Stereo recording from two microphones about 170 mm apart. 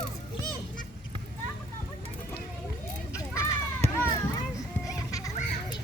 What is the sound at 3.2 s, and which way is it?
Children playing, 15° left (ahead or behind).